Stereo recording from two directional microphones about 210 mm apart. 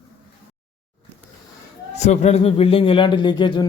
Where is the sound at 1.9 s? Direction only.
30° left (ahead or behind).